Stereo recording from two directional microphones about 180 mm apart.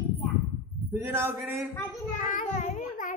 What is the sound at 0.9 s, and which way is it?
Speech, 15° right (ahead or behind).